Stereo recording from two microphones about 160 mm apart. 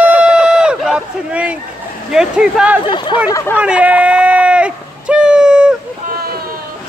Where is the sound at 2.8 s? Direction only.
30° left (ahead or behind).